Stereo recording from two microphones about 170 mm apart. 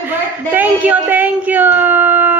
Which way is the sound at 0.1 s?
10° right (ahead or behind).